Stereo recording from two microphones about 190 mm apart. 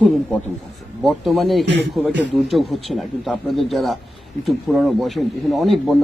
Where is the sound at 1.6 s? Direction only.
65° right (ahead or behind).